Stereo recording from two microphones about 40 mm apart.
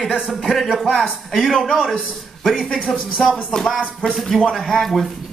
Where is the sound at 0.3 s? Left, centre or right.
Centre.